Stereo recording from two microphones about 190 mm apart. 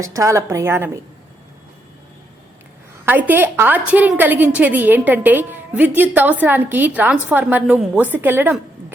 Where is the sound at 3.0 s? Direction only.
10° right (ahead or behind).